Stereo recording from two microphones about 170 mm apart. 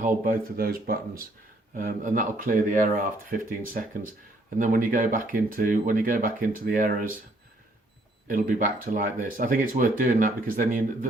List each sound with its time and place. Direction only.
0.0 s speech: 55° right (ahead or behind)
8.3 s speech: 50° right (ahead or behind)